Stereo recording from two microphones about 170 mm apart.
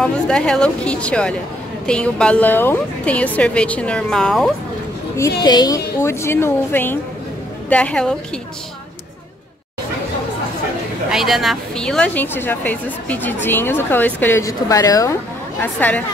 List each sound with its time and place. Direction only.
0.0 s a woman's voice: 5° left (ahead or behind)
5.4 s a woman's voice: 25° left (ahead or behind); by 8.2 s 5° left (ahead or behind)
11.1 s a woman's voice: centre (ahead or behind); by 15.1 s 20° left (ahead or behind)
15.6 s a woman's voice: 10° left (ahead or behind)